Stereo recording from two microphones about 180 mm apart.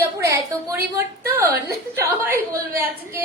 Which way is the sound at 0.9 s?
15° right (ahead or behind).